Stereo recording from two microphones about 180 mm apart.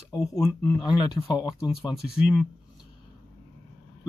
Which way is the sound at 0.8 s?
25° left (ahead or behind).